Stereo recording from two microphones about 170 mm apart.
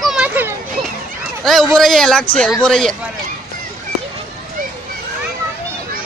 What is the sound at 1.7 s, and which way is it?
Speech, centre (ahead or behind).